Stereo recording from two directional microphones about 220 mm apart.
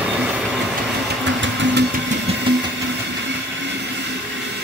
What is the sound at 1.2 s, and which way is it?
Engine, 55° right (ahead or behind).